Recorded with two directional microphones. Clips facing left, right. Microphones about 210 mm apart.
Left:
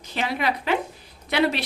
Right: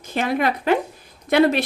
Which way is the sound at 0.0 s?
50° right (ahead or behind).